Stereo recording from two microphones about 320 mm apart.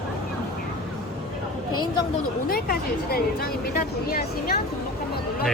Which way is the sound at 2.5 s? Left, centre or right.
Left.